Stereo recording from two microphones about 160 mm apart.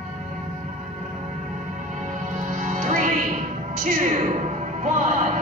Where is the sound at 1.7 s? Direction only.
50° right (ahead or behind).